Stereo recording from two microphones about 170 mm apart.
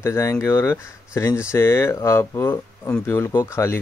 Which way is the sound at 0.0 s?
15° left (ahead or behind).